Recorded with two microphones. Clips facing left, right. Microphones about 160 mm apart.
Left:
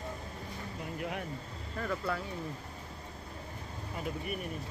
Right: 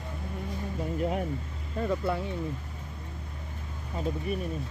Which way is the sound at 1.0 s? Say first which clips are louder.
Right 8 dB; 35° right (ahead or behind).